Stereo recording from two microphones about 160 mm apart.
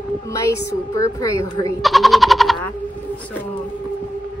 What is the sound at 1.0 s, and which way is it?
Speech, 20° left (ahead or behind).